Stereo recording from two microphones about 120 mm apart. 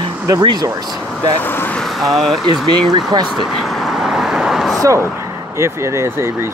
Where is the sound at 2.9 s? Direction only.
35° right (ahead or behind).